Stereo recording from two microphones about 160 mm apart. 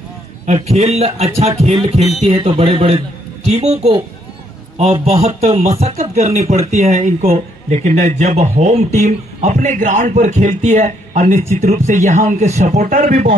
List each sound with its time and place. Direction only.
0.5 s a man's voice: 45° right (ahead or behind)
5.0 s speech: 40° right (ahead or behind)